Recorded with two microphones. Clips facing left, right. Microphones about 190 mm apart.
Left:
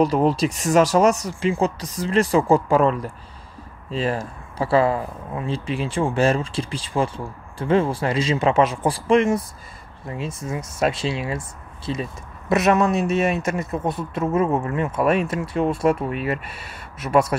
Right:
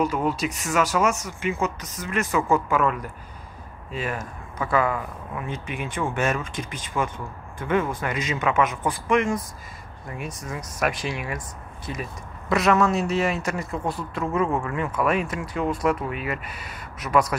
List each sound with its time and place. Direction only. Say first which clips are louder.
0.0 s speech: left 6 dB; 35° left (ahead or behind)